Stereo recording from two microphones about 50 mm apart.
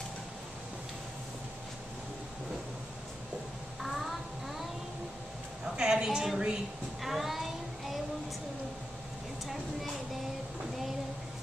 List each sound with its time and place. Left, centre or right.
5.8 s a woman's voice: centre
7.0 s child singing: centre